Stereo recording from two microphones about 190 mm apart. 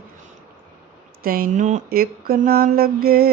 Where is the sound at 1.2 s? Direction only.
50° right (ahead or behind).